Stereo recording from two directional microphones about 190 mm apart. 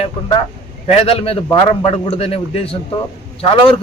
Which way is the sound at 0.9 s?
30° left (ahead or behind).